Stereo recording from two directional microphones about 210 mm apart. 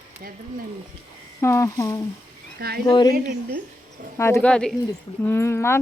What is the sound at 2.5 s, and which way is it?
Speech, 50° right (ahead or behind).